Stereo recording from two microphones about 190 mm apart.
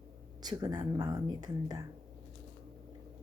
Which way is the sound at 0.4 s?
20° right (ahead or behind).